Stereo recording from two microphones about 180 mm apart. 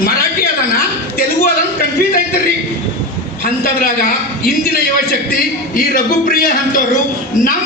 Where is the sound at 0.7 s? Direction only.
55° left (ahead or behind).